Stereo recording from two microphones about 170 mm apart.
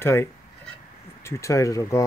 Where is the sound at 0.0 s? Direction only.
15° left (ahead or behind).